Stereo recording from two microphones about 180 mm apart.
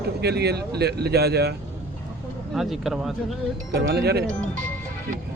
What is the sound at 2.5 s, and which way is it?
Speech, centre (ahead or behind).